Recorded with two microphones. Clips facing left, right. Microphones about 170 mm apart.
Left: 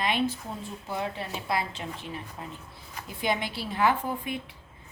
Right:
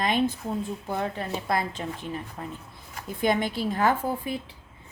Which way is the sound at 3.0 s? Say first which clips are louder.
Right 5 dB; 45° right (ahead or behind).